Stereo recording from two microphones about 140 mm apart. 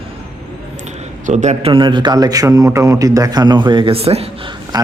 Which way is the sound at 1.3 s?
55° right (ahead or behind).